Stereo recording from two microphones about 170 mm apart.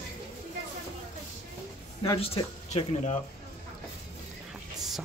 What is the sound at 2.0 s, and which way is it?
Speech, 35° left (ahead or behind).